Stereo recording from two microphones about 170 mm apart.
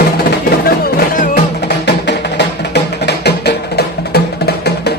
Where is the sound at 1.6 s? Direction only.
80° left.